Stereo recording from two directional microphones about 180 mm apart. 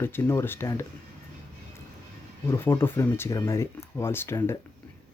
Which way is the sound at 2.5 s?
10° left (ahead or behind).